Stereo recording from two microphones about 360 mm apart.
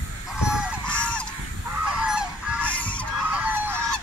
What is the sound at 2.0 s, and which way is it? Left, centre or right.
Fowl, centre.